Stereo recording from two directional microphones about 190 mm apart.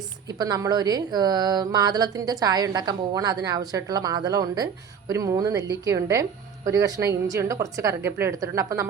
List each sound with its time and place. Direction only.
0.3 s a woman's voice: 20° right (ahead or behind)